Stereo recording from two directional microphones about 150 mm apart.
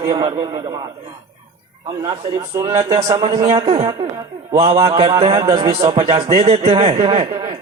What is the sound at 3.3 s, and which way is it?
Speech, 25° right (ahead or behind).